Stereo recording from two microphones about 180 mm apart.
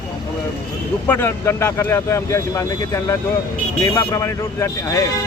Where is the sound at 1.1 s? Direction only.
15° left (ahead or behind).